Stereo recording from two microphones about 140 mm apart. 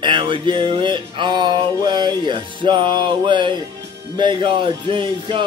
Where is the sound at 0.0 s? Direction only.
35° right (ahead or behind).